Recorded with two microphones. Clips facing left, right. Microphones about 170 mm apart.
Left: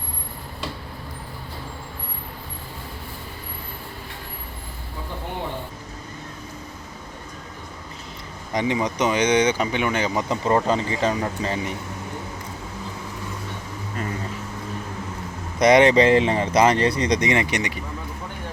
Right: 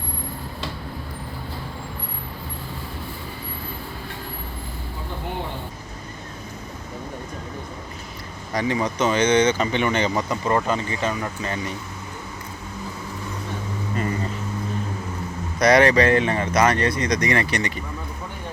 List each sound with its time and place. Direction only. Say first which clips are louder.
8.5 s speech: even; 20° left (ahead or behind)
10.2 s speech: left 2 dB; 25° left (ahead or behind)
15.5 s speech: left 1 dB; 20° left (ahead or behind)